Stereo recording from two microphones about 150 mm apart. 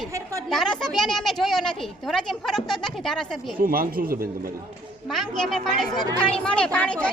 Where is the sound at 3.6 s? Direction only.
75° right (ahead or behind).